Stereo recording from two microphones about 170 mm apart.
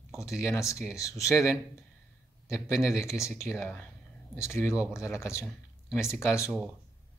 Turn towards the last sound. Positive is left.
turn(degrees=-5)  # may be behind; listen again after turning